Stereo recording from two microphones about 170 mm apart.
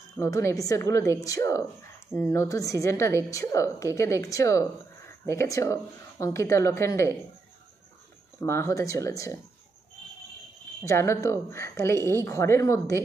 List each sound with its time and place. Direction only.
0.2 s a woman's voice: 15° left (ahead or behind)
8.4 s a woman's voice: 15° left (ahead or behind)
10.9 s a woman's voice: 15° left (ahead or behind)